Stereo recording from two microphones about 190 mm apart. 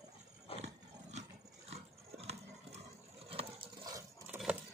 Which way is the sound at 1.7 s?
35° right (ahead or behind).